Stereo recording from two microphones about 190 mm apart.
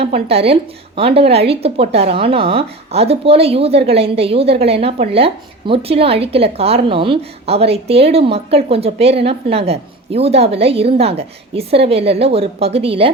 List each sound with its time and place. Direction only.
0.0 s a woman's voice: 30° right (ahead or behind)